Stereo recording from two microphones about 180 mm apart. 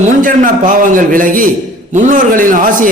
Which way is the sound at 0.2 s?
45° right (ahead or behind).